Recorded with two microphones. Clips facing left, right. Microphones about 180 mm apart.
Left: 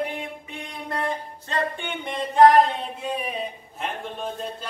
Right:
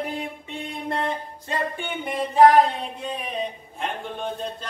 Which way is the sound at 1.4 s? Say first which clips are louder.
Left 1 dB; 10° right (ahead or behind).